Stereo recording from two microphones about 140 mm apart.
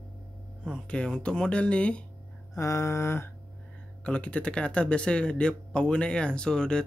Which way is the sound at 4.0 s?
10° left (ahead or behind).